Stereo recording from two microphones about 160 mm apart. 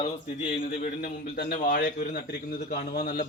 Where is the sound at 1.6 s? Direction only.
60° left (ahead or behind).